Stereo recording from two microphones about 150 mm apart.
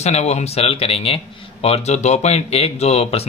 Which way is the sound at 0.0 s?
45° left (ahead or behind).